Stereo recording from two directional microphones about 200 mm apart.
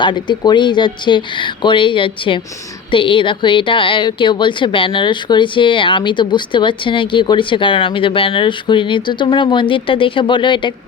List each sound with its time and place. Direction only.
0.0 s a woman's voice: 20° left (ahead or behind)